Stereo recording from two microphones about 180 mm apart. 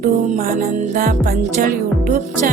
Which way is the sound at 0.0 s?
50° right (ahead or behind).